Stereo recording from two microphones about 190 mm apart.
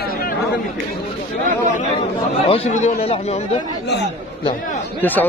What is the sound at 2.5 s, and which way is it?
Speech, 35° left (ahead or behind).